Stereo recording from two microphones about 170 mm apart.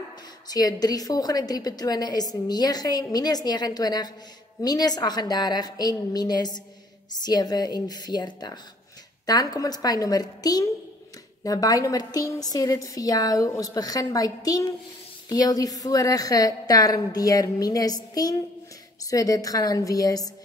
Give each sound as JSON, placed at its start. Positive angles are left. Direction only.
{"t": 0.5, "sound": "a woman's voice", "side_deg": 20}